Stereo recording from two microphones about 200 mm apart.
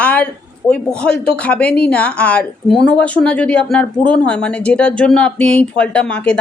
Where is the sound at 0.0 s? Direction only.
5° left (ahead or behind).